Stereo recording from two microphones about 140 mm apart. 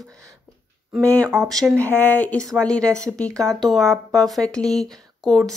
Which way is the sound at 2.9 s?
25° right (ahead or behind).